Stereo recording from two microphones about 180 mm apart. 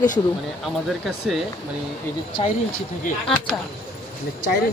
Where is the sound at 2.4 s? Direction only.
35° left (ahead or behind).